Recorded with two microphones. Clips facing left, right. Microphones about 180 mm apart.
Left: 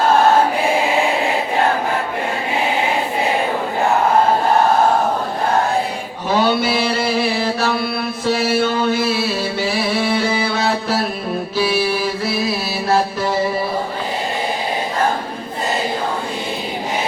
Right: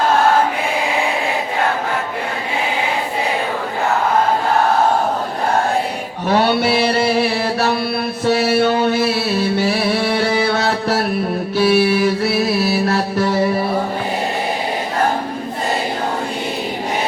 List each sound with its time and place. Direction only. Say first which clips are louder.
6.2 s mantra: right 1 dB; 65° right (ahead or behind)
9.6 s music: right 2 dB; 65° right (ahead or behind)
11.5 s mantra: right 5 dB; 65° right (ahead or behind)
12.9 s music: even; 65° right (ahead or behind)